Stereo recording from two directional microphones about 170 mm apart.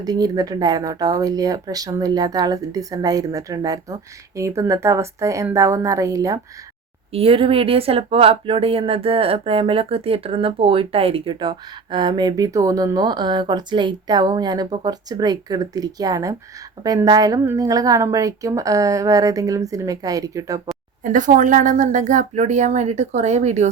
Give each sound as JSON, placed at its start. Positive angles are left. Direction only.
{"t": 0.0, "sound": "a woman's voice", "side_deg": -20}
{"t": 7.1, "sound": "speech", "side_deg": -35}
{"t": 21.0, "sound": "speech", "side_deg": -50}